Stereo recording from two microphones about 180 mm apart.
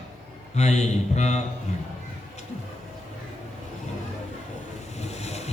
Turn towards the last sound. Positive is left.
turn(degrees=35)  # may be behind; listen again after turning